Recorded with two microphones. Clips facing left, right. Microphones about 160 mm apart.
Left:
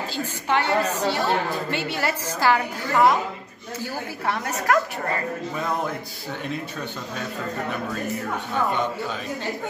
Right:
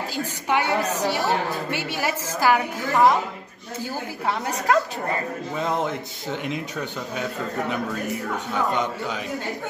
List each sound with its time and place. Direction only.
0.1 s a woman's voice: 10° right (ahead or behind)
4.3 s a woman's voice: 15° right (ahead or behind)
6.4 s a woman's voice: 15° right (ahead or behind)